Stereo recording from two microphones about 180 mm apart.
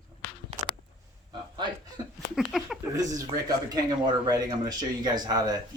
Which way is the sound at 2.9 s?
20° right (ahead or behind).